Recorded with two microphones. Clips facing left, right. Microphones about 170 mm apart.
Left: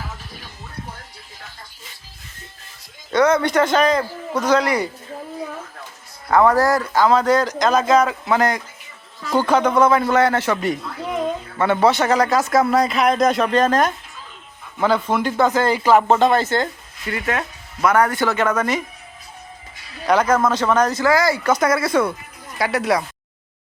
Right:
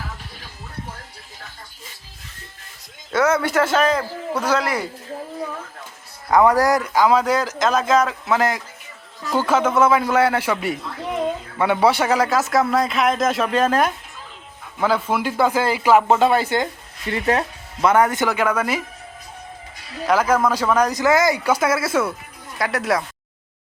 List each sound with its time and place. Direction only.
3.1 s speech: 5° right (ahead or behind)
6.3 s speech: 15° right (ahead or behind)
17.1 s speech: 30° right (ahead or behind)
18.3 s speech: 10° right (ahead or behind)
20.1 s speech: 5° right (ahead or behind)